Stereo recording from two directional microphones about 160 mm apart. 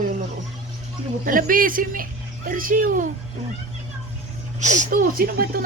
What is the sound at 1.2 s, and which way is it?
Speech, 60° right (ahead or behind).